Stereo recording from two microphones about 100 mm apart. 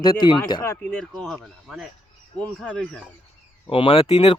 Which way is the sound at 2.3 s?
10° left (ahead or behind).